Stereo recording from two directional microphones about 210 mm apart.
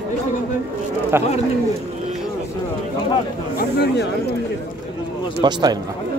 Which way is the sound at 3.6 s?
50° left (ahead or behind).